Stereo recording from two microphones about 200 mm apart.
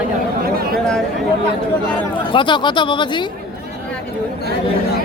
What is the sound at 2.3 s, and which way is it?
Speech, 25° left (ahead or behind).